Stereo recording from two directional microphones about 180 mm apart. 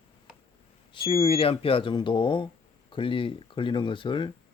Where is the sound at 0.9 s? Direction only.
30° left (ahead or behind).